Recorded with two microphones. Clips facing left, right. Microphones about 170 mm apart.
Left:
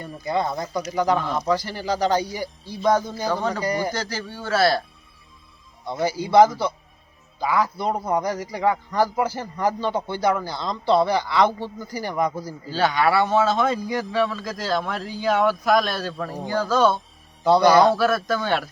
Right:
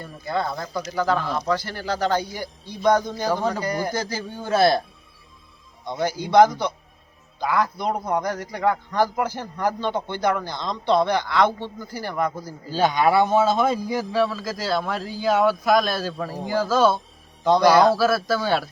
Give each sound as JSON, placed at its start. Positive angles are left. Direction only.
{"t": 0.3, "sound": "speech", "side_deg": 20}
{"t": 0.6, "sound": "a man's voice", "side_deg": 5}
{"t": 1.1, "sound": "speech", "side_deg": 0}
{"t": 1.5, "sound": "a man's voice", "side_deg": 10}
{"t": 3.9, "sound": "a man's voice", "side_deg": -15}
{"t": 5.8, "sound": "a man's voice", "side_deg": 5}
{"t": 12.7, "sound": "a man's voice", "side_deg": -15}